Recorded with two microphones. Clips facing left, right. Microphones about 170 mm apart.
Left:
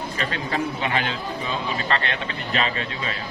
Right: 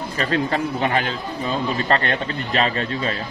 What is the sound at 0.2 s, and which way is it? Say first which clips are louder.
Speech: right 6 dB; 40° right (ahead or behind).